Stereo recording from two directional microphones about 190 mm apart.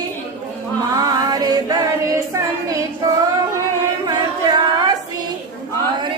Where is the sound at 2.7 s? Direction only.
20° right (ahead or behind).